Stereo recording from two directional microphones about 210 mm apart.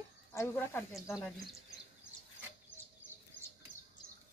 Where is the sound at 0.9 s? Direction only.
Centre (ahead or behind).